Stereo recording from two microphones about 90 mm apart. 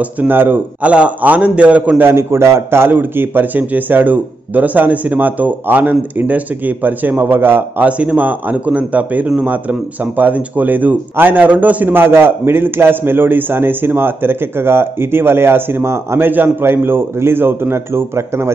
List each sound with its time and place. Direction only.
0.0 s a man's voice: 20° right (ahead or behind)